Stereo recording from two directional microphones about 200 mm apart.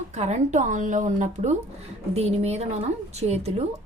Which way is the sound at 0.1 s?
35° right (ahead or behind).